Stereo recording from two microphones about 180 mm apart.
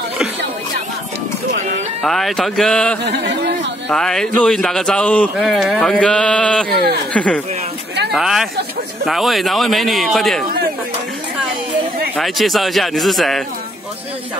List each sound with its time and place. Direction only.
2.0 s a man's voice: centre (ahead or behind)
3.0 s speech: 70° right (ahead or behind)
3.9 s a man's voice: 5° left (ahead or behind)
12.2 s a man's voice: centre (ahead or behind)